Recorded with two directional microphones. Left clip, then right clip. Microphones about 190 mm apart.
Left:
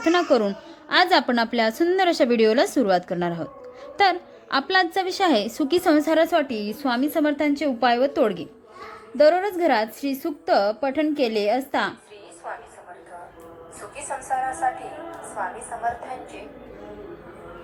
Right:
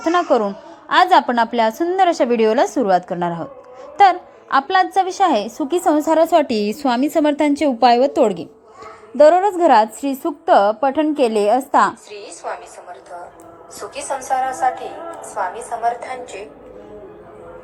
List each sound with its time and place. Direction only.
0.0 s a woman's voice: 10° left (ahead or behind)
6.0 s a woman's voice: 5° right (ahead or behind)
6.3 s a woman's voice: 25° right (ahead or behind)
12.1 s a sound: 60° right (ahead or behind)
13.9 s a woman's voice: 65° right (ahead or behind)
14.3 s a woman's voice: 50° right (ahead or behind)
15.8 s a woman's voice: 60° right (ahead or behind)